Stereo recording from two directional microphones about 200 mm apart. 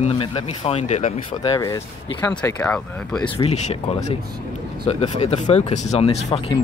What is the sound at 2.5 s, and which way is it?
Speech, 5° left (ahead or behind).